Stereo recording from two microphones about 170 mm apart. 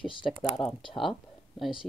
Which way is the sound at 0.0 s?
30° left (ahead or behind).